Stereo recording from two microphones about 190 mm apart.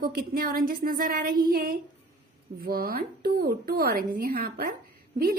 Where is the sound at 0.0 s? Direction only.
50° right (ahead or behind).